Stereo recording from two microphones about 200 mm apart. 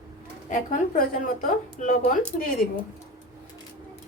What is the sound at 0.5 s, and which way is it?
A woman's voice, 40° left (ahead or behind).